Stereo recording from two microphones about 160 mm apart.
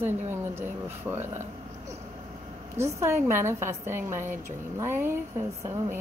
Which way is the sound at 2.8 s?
15° right (ahead or behind).